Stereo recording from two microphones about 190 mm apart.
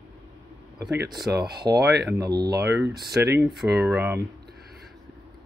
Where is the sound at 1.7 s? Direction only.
20° right (ahead or behind).